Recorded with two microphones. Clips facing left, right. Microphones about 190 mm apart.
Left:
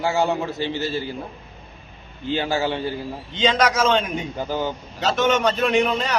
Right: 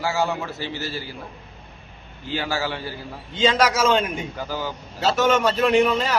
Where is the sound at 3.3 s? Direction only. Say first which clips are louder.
Even; 10° right (ahead or behind).